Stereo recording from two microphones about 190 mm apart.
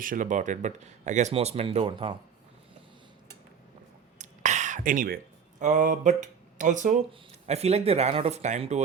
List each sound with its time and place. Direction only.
0.0 s speech: 45° right (ahead or behind)
4.2 s a sound: 40° right (ahead or behind)
7.1 s speech: 35° right (ahead or behind)